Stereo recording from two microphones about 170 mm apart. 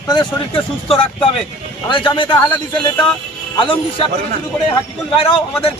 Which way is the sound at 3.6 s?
30° left (ahead or behind).